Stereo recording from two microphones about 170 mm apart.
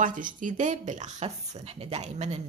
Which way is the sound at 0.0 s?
50° right (ahead or behind).